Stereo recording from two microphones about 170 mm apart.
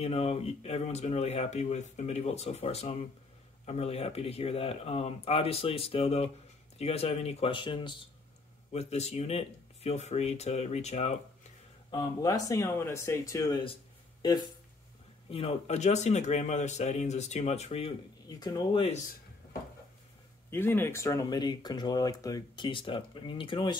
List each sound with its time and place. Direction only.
0.0 s speech: 35° left (ahead or behind)
8.7 s speech: 40° left (ahead or behind)
11.9 s speech: 20° left (ahead or behind)
15.2 s speech: 35° left (ahead or behind)
18.2 s speech: 20° left (ahead or behind)
20.4 s speech: 15° left (ahead or behind)